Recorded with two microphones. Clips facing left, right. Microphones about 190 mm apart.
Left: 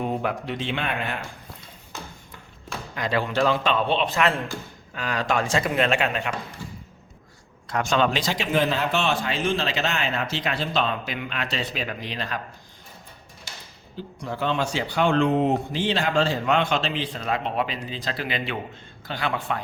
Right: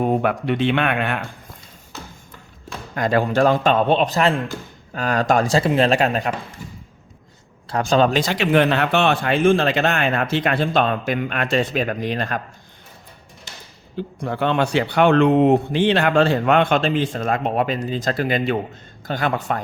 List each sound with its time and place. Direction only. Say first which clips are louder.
0.0 s speech: right 7 dB; 55° right (ahead or behind)
2.9 s speech: right 6 dB; 45° right (ahead or behind)
7.7 s speech: right 5 dB; 35° right (ahead or behind); by 12.4 s 50° right (ahead or behind)
13.9 s speech: right 6 dB; 60° right (ahead or behind); by 19.6 s 45° right (ahead or behind)